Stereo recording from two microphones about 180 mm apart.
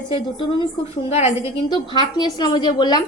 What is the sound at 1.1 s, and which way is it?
A woman's voice, 35° left (ahead or behind).